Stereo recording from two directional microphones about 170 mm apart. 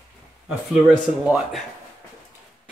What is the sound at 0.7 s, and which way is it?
Speech, centre (ahead or behind).